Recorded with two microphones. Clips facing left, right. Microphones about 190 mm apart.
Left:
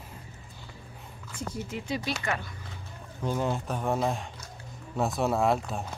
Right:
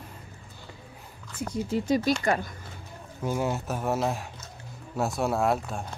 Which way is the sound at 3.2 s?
10° right (ahead or behind).